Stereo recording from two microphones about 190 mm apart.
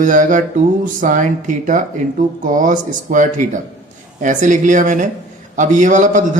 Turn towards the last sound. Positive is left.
turn(degrees=-40)  # may be behind; listen again after turning